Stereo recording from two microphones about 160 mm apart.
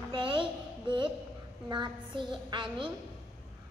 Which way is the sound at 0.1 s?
30° right (ahead or behind).